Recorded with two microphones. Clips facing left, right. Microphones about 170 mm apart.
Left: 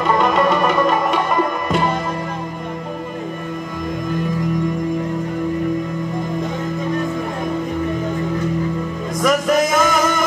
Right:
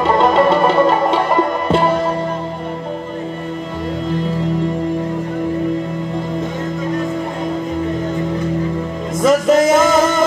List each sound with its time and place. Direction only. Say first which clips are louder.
0.0 s music: right 3 dB; 30° right (ahead or behind)
9.2 s music: right 4 dB; 25° right (ahead or behind)